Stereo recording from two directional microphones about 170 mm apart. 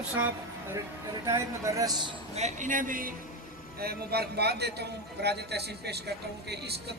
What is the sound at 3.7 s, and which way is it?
A man's voice, 70° right (ahead or behind).